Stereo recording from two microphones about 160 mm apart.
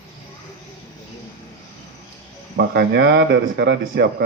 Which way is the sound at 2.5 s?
90° right.